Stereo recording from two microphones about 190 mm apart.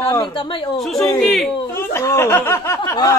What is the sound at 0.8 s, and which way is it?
Speech, centre (ahead or behind).